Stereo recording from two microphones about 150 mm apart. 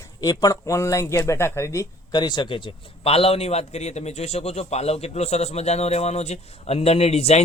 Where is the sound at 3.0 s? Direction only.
40° left (ahead or behind).